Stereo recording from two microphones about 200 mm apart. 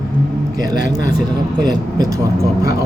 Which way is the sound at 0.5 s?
20° right (ahead or behind).